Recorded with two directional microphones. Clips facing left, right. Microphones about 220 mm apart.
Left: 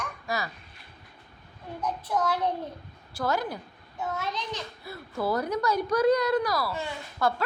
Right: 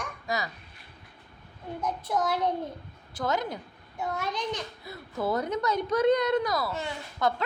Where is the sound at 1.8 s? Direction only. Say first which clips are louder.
Even; 10° right (ahead or behind).